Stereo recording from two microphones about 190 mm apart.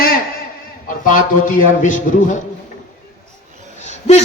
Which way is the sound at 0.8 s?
45° left (ahead or behind).